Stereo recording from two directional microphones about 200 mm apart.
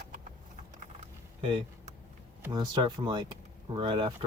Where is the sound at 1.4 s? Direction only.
25° right (ahead or behind).